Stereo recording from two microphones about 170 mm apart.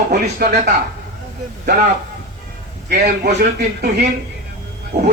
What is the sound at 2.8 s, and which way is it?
Speech, 70° right (ahead or behind).